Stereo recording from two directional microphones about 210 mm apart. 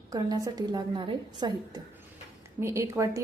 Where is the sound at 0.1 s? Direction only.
15° right (ahead or behind).